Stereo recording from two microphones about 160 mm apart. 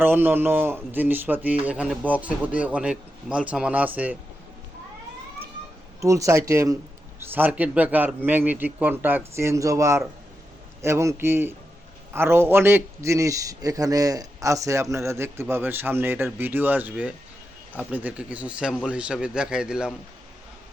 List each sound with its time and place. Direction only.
0.0 s a man's voice: 15° right (ahead or behind)
6.0 s a man's voice: 20° right (ahead or behind)